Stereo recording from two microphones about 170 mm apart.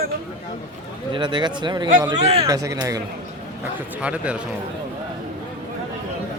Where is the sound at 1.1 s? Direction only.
25° right (ahead or behind).